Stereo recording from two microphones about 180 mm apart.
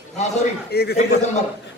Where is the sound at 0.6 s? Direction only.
60° left (ahead or behind).